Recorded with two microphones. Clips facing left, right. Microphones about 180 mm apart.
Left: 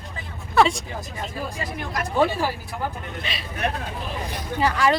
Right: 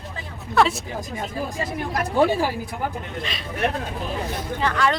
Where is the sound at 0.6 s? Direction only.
5° right (ahead or behind).